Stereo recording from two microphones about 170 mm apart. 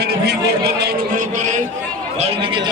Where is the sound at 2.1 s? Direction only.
35° right (ahead or behind).